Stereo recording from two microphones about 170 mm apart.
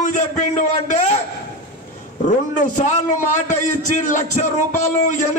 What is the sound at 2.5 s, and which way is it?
A man's voice, 45° left (ahead or behind).